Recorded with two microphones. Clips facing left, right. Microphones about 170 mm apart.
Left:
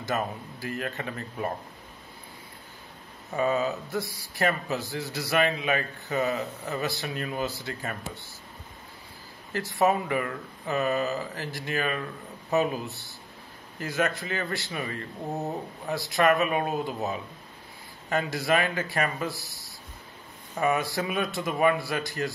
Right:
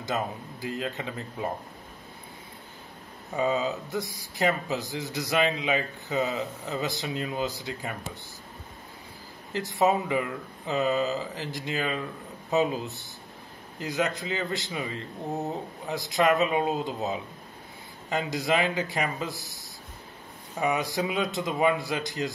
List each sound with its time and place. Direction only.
0.0 s speech: 20° right (ahead or behind)
3.3 s speech: 15° right (ahead or behind)
9.5 s a man's voice: 20° right (ahead or behind)